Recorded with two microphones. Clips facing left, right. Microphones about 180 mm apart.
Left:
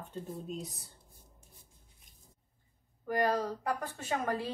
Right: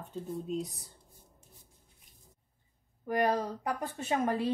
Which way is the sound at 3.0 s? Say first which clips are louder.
Right 1 dB; 20° right (ahead or behind).